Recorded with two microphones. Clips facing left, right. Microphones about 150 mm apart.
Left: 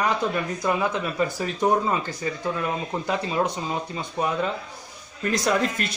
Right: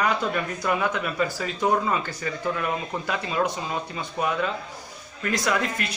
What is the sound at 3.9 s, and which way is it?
Speech, 25° left (ahead or behind).